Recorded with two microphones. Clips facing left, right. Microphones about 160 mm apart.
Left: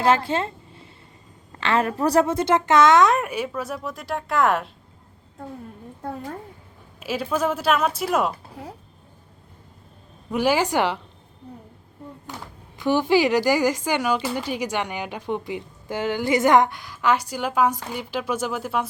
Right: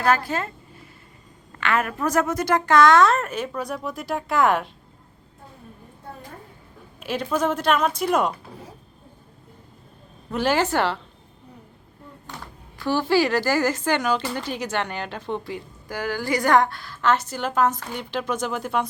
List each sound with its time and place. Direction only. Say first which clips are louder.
0.0 s a sound: left 2 dB; 25° left (ahead or behind)
1.5 s a woman's voice: left 2 dB; 30° left (ahead or behind); by 4.7 s centre (ahead or behind)
6.0 s a woman's voice: left 9 dB; 90° left
7.0 s speech: even; 5° left (ahead or behind)
10.3 s a woman's voice: left 1 dB; 10° left (ahead or behind)
12.7 s a woman's voice: left 2 dB; 20° left (ahead or behind)